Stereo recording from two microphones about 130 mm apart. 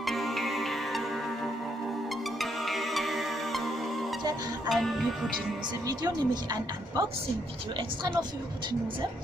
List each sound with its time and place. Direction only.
0.0 s music: centre (ahead or behind)
2.6 s music: centre (ahead or behind)
4.6 s music: centre (ahead or behind)
5.9 s a woman's voice: 30° right (ahead or behind)